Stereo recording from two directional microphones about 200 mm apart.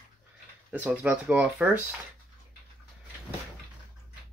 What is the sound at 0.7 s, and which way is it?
Speech, 5° right (ahead or behind).